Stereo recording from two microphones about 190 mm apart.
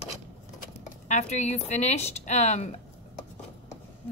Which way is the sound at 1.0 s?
40° left (ahead or behind).